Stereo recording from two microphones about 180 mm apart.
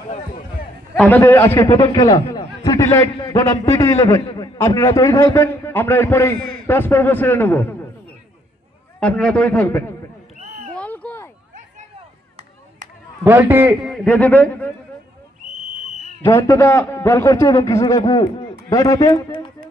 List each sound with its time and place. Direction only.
0.9 s a man's voice: 10° left (ahead or behind)
9.0 s a man's voice: 5° left (ahead or behind)
10.7 s a sound: 5° left (ahead or behind)
13.2 s a man's voice: 10° right (ahead or behind)
13.9 s a man's voice: 10° left (ahead or behind)
16.2 s a man's voice: 10° left (ahead or behind)